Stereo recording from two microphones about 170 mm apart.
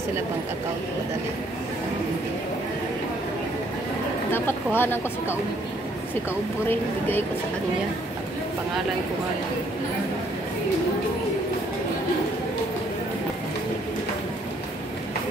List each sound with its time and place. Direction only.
4.3 s speech: 10° left (ahead or behind)
6.7 s speech: 10° left (ahead or behind)